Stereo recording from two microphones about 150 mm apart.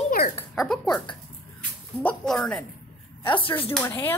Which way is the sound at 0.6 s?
5° left (ahead or behind).